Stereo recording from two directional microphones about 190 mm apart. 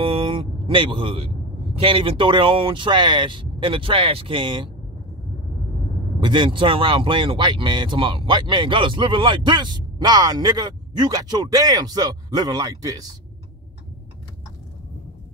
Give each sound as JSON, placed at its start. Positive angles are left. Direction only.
{"t": 0.0, "sound": "speech", "side_deg": -25}
{"t": 6.2, "sound": "speech", "side_deg": -25}